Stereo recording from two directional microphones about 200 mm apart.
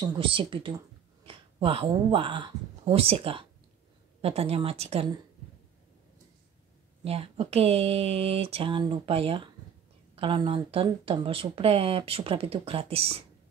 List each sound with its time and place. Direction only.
0.0 s speech: 25° right (ahead or behind)
7.1 s speech: 30° right (ahead or behind)